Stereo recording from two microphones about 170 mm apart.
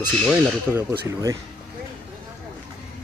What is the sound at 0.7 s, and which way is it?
Speech, 5° left (ahead or behind).